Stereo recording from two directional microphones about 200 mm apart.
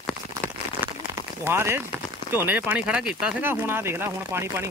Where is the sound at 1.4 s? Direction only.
10° right (ahead or behind).